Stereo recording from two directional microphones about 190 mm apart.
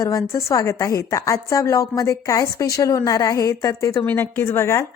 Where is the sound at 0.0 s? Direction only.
15° left (ahead or behind).